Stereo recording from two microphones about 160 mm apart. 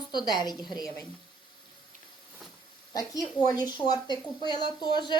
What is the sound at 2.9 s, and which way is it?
Speech, 25° left (ahead or behind).